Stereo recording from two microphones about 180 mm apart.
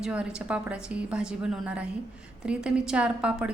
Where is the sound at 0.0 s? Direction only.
5° right (ahead or behind).